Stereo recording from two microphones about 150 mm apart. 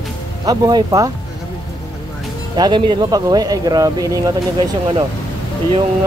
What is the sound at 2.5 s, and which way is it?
A man's voice, 30° right (ahead or behind).